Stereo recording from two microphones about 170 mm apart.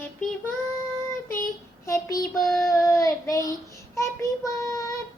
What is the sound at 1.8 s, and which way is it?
A child's voice, 20° left (ahead or behind).